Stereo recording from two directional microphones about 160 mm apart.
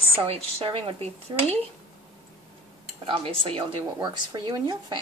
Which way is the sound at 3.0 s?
35° right (ahead or behind).